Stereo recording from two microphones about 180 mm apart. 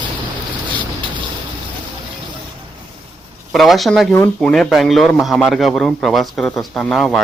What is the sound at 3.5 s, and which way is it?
Speech, centre (ahead or behind).